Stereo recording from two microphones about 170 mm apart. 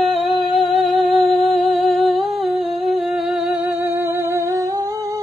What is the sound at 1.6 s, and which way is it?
Humming, centre (ahead or behind).